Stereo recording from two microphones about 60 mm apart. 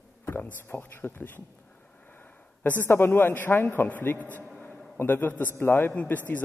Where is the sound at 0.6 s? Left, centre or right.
Left.